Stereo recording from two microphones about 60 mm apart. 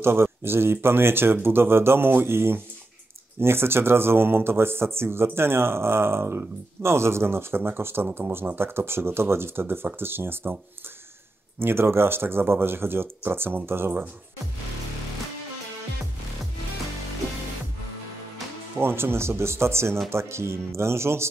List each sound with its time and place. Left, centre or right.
0.0 s speech: right
11.6 s speech: right
18.8 s speech: right